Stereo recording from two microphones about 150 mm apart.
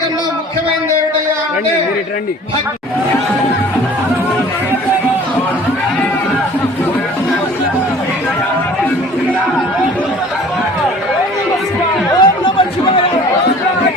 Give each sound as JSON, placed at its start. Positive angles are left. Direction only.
{"t": 12.2, "sound": "chatter", "side_deg": 30}